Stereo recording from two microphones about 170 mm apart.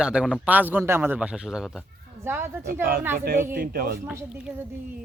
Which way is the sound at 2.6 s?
60° right (ahead or behind).